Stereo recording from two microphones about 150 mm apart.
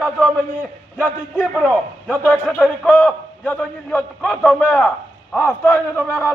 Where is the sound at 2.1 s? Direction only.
10° left (ahead or behind).